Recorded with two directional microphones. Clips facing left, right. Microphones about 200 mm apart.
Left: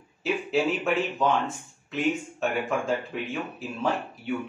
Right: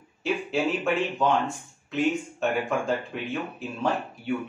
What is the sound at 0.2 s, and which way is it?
Speech, centre (ahead or behind).